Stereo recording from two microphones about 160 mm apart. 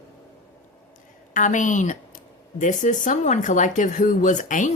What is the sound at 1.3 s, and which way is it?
Speech, 55° left (ahead or behind).